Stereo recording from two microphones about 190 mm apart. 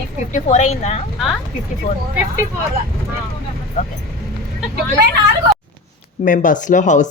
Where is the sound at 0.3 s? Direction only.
35° left (ahead or behind).